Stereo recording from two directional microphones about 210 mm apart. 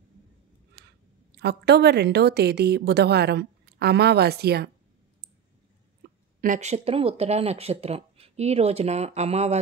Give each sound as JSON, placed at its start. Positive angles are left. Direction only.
{"t": 1.3, "sound": "a woman's voice", "side_deg": -50}
{"t": 6.4, "sound": "speech", "side_deg": -35}